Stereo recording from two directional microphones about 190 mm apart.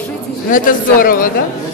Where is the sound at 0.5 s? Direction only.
45° left (ahead or behind).